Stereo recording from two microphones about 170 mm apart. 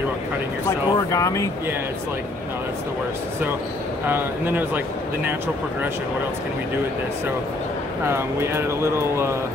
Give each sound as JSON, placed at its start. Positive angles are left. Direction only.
{"t": 0.7, "sound": "speech", "side_deg": 20}
{"t": 4.1, "sound": "speech", "side_deg": -10}
{"t": 8.0, "sound": "speech", "side_deg": -15}